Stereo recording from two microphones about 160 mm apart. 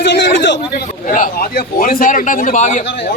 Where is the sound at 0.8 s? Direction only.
50° left (ahead or behind).